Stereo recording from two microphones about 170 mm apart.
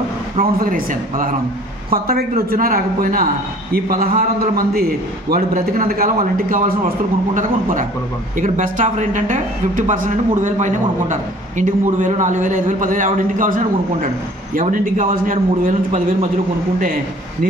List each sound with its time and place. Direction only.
0.6 s a man's voice: 55° right (ahead or behind)
8.4 s speech: 50° right (ahead or behind)